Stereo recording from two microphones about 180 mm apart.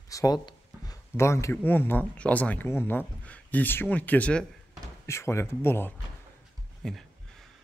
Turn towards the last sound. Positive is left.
turn(degrees=0)  # may be behind; listen again after turning